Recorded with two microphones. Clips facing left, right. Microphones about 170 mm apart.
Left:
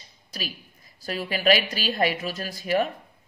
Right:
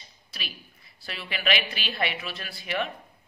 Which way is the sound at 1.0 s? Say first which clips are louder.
Left 8 dB; 40° left (ahead or behind).